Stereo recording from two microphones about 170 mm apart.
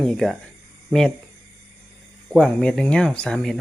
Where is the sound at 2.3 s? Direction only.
5° left (ahead or behind).